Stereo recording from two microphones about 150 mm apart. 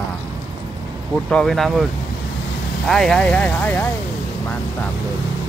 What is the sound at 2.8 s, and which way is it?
Speech, 5° left (ahead or behind).